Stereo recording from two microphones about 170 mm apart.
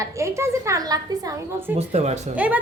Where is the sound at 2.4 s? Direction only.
10° right (ahead or behind).